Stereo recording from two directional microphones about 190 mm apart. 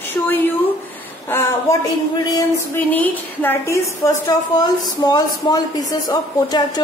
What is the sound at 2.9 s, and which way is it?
A woman's voice, 10° left (ahead or behind).